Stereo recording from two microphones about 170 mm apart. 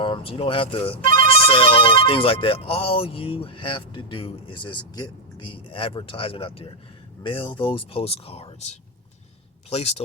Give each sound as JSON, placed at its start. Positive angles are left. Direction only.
{"t": 0.0, "sound": "speech", "side_deg": 30}